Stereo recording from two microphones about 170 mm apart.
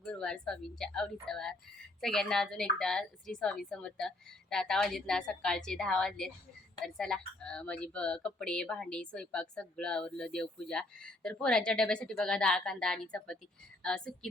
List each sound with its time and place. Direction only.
0.0 s a woman's voice: 5° left (ahead or behind)